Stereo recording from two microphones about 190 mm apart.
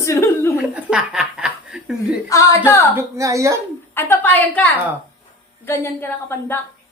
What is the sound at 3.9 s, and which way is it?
A woman's voice, 10° left (ahead or behind).